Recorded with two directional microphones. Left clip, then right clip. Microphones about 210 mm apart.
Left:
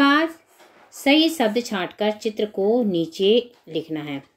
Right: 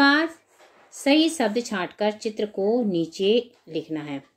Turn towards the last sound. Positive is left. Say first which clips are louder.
# left 2 dB
turn(degrees=0)  # may be behind; listen again after turning